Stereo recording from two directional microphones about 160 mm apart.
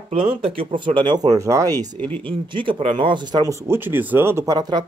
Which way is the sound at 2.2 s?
30° right (ahead or behind).